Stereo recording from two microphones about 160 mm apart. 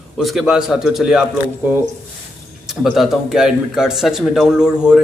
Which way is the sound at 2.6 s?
Centre (ahead or behind).